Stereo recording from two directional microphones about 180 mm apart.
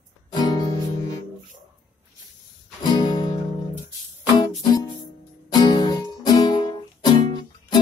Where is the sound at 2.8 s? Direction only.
25° left (ahead or behind).